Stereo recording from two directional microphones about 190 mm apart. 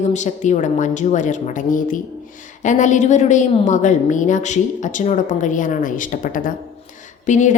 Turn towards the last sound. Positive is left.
turn(degrees=40)  # may be behind; listen again after turning